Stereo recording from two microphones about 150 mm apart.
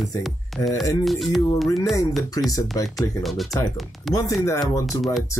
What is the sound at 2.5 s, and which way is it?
Speech, 20° left (ahead or behind).